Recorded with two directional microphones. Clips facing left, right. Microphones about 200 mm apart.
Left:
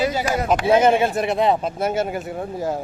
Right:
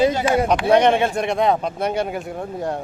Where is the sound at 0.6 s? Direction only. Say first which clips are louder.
Left 2 dB; 5° left (ahead or behind).